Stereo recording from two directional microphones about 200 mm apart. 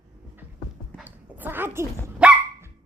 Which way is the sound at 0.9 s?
10° right (ahead or behind).